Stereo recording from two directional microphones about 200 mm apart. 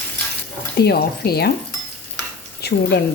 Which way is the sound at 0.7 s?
55° left (ahead or behind).